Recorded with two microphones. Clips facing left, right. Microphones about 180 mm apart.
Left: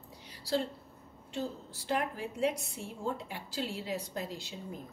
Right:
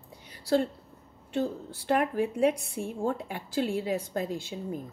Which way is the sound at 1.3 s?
60° right (ahead or behind).